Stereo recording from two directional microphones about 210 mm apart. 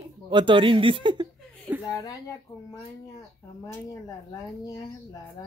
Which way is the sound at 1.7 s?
10° right (ahead or behind).